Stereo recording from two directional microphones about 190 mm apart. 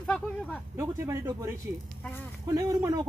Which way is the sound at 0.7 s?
15° right (ahead or behind).